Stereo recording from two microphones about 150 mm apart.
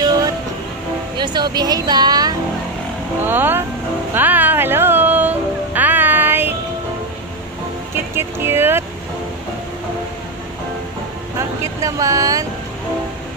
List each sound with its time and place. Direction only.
1.1 s speech: 30° right (ahead or behind)
3.3 s speech: 15° right (ahead or behind)
4.1 s a sound: 10° right (ahead or behind)
7.9 s vehicle: 15° right (ahead or behind)
11.3 s vehicle: 20° right (ahead or behind)